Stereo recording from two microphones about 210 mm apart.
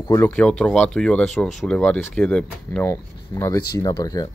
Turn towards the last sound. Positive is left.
turn(degrees=15)  # may be behind; listen again after turning